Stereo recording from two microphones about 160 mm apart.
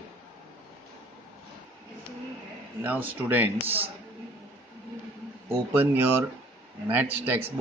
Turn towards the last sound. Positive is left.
turn(degrees=-10)  # may be behind; listen again after turning